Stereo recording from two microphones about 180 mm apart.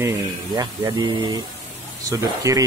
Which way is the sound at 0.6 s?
20° right (ahead or behind).